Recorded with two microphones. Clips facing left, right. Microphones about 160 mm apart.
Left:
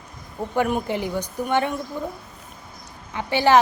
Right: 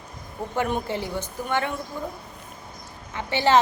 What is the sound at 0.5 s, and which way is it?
A woman's voice, 10° left (ahead or behind).